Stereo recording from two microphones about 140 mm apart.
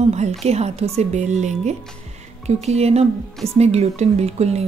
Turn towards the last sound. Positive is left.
turn(degrees=-50)  # may be behind; listen again after turning